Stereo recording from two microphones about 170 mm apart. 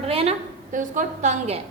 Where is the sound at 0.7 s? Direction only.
50° right (ahead or behind).